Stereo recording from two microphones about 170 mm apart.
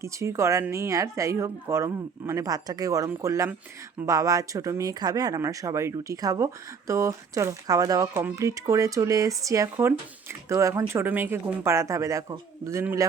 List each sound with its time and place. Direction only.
0.0 s speech: 15° right (ahead or behind)